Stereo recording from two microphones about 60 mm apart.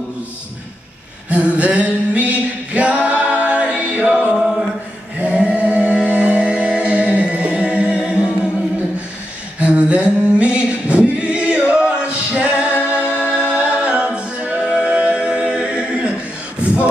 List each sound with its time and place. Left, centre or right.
1.3 s a capella: right
5.2 s chant: right
9.6 s a sound: centre
10.4 s singing: centre
13.2 s a capella: centre
16.6 s beatboxing: right